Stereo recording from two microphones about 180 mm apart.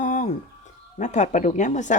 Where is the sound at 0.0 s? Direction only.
45° left (ahead or behind).